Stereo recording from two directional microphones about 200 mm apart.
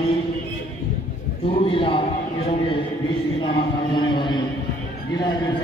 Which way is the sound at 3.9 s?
25° left (ahead or behind).